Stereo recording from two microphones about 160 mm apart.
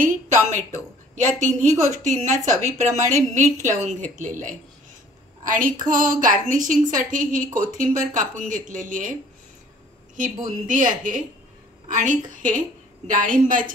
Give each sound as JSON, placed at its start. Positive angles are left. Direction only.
{"t": 0.0, "sound": "a woman's voice", "side_deg": -50}
{"t": 10.4, "sound": "a woman's voice", "side_deg": -55}